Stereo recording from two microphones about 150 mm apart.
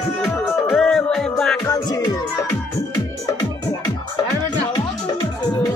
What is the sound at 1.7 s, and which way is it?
Music, 25° left (ahead or behind).